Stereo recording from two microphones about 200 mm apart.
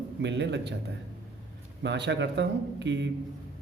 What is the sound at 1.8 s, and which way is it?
Speech, 60° right (ahead or behind).